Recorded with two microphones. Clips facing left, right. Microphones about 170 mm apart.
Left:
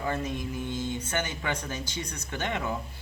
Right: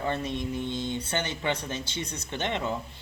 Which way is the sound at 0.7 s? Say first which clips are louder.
Right 1 dB; 10° left (ahead or behind).